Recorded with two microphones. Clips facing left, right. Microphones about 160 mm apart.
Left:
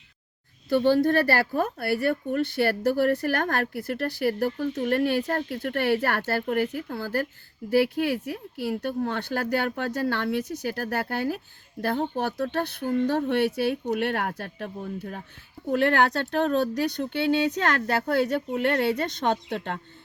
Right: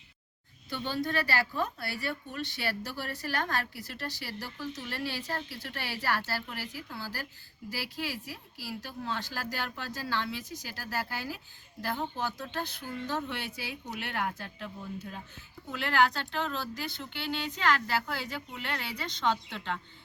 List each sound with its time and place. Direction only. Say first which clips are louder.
0.7 s speech: left 13 dB; 55° left (ahead or behind)